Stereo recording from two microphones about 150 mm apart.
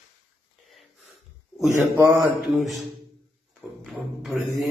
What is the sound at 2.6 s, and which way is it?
Mantra, centre (ahead or behind).